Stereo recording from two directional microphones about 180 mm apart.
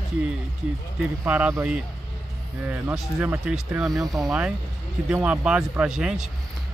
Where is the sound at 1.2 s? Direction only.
10° right (ahead or behind).